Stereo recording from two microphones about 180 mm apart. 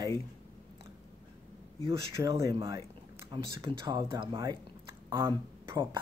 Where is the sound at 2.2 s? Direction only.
20° right (ahead or behind).